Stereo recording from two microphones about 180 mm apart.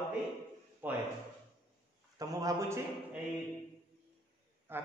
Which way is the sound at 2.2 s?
20° right (ahead or behind).